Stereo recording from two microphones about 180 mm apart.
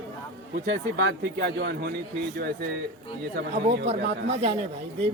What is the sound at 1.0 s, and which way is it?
A man's voice, 70° right (ahead or behind).